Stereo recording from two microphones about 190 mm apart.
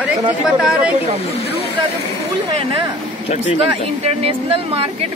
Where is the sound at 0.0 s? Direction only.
5° right (ahead or behind).